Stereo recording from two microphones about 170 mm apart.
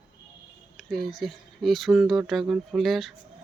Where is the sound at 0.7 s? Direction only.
Centre (ahead or behind).